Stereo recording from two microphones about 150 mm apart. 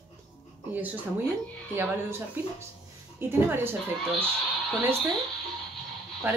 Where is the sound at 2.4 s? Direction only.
15° right (ahead or behind).